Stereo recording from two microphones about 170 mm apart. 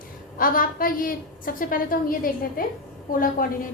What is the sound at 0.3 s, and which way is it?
A woman's voice, 55° left (ahead or behind).